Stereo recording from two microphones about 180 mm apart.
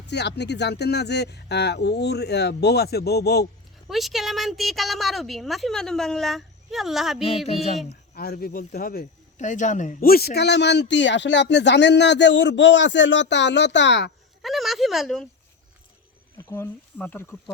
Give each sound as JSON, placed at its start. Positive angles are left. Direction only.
{"t": 0.1, "sound": "a man's voice", "side_deg": 70}
{"t": 3.8, "sound": "speech", "side_deg": 0}
{"t": 7.4, "sound": "a sound", "side_deg": 35}
{"t": 8.1, "sound": "a man's voice", "side_deg": 60}
{"t": 14.4, "sound": "speech", "side_deg": 0}
{"t": 16.5, "sound": "speech", "side_deg": 15}